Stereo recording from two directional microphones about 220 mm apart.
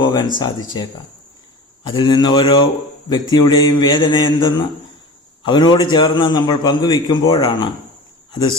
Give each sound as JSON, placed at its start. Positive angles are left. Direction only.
{"t": 0.0, "sound": "a man's voice", "side_deg": 20}